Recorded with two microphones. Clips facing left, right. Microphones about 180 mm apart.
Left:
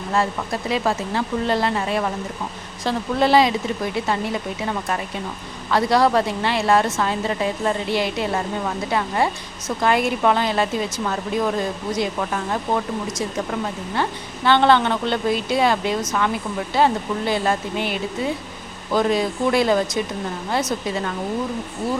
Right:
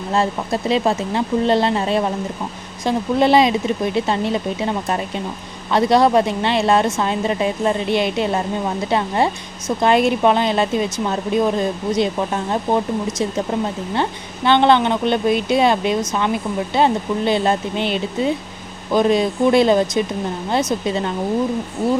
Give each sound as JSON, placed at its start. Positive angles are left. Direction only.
{"t": 0.1, "sound": "speech", "side_deg": -25}